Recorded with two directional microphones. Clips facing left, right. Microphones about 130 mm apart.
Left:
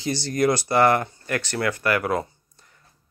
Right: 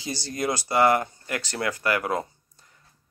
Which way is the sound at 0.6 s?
15° right (ahead or behind).